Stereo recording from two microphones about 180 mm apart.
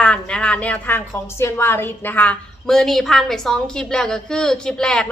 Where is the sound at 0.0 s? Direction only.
5° left (ahead or behind).